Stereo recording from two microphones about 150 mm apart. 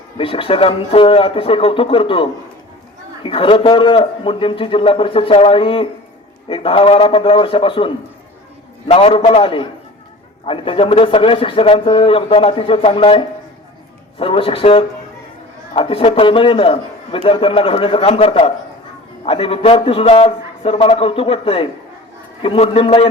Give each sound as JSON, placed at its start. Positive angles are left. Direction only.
{"t": 0.2, "sound": "a man's voice", "side_deg": 35}